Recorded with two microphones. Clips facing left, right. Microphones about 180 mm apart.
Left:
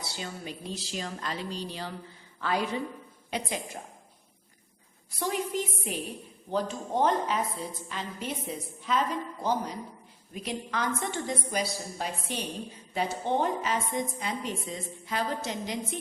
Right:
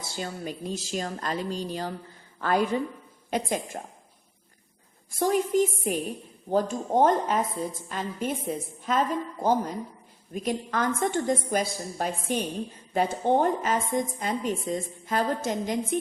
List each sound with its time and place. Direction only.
0.0 s a woman's voice: 45° right (ahead or behind)
5.1 s a woman's voice: 45° right (ahead or behind)